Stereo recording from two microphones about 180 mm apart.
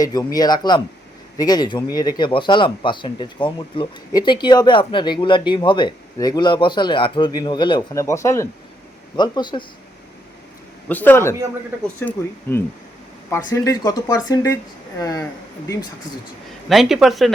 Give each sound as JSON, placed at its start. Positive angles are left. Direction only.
{"t": 0.0, "sound": "speech", "side_deg": 20}
{"t": 10.8, "sound": "speech", "side_deg": 10}
{"t": 16.6, "sound": "speech", "side_deg": 0}